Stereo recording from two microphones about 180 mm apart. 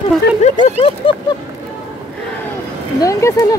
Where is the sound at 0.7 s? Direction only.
30° left (ahead or behind).